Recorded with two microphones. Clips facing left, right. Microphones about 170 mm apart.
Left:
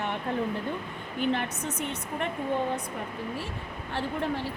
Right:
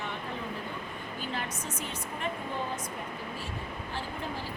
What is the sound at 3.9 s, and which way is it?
Speech, 70° left (ahead or behind).